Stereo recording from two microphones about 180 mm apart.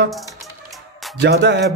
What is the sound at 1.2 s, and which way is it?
Speech, 70° right (ahead or behind).